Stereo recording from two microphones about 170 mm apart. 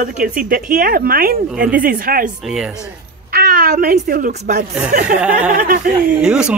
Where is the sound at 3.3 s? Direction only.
60° right (ahead or behind).